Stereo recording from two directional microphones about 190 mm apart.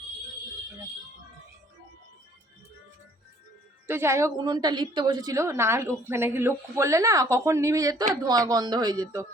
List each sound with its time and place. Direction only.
3.8 s a woman's voice: 15° right (ahead or behind)